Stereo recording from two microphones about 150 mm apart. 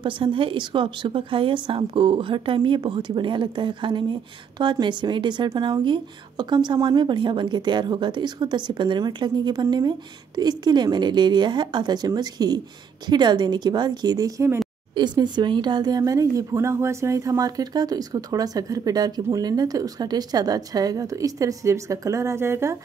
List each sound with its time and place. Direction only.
0.0 s a woman's voice: 35° right (ahead or behind); by 22.8 s 15° right (ahead or behind)